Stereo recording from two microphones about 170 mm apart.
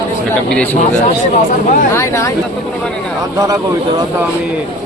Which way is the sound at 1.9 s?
15° left (ahead or behind).